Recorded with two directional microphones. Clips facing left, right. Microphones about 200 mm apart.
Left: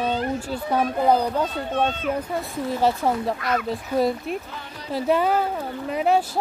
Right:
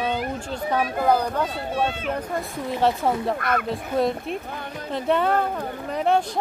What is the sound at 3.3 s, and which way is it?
Speech, 55° right (ahead or behind).